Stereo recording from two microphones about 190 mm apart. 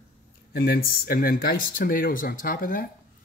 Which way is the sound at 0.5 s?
55° left (ahead or behind).